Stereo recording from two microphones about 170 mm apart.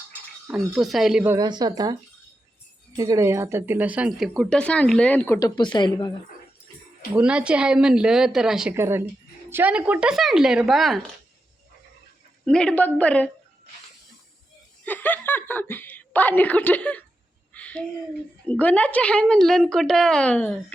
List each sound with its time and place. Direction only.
0.4 s a woman's voice: 5° right (ahead or behind)
1.4 s a woman's voice: 25° right (ahead or behind); by 5.5 s 15° left (ahead or behind)
5.5 s speech: 25° left (ahead or behind)
7.2 s a woman's voice: 5° right (ahead or behind)
8.7 s a woman's voice: 15° right (ahead or behind)
12.5 s a woman's voice: 5° left (ahead or behind)
14.8 s a woman's voice: 10° left (ahead or behind)
17.5 s a sound: 10° left (ahead or behind)
18.4 s a woman's voice: 10° left (ahead or behind)